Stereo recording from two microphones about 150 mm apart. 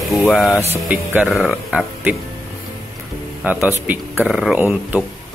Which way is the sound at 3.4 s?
10° right (ahead or behind).